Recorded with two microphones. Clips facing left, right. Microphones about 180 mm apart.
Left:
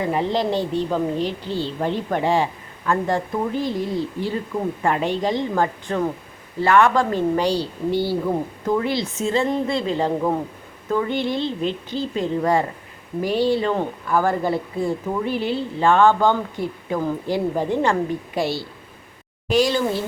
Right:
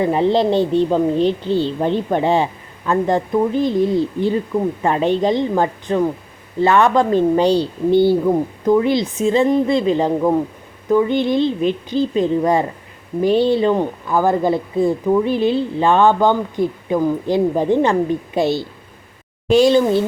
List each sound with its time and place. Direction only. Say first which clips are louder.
0.0 s a woman's voice: right 6 dB; 25° right (ahead or behind)